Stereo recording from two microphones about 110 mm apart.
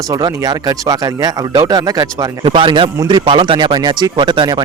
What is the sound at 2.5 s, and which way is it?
Speech, 50° right (ahead or behind).